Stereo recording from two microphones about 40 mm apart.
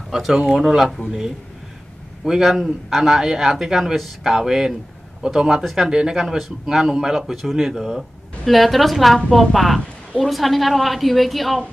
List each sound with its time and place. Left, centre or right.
0.1 s a man's voice: centre